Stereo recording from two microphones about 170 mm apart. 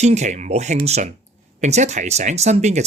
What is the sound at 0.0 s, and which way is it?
Speech, 40° right (ahead or behind).